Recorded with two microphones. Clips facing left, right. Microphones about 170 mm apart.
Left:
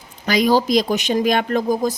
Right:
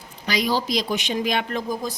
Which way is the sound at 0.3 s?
50° left (ahead or behind).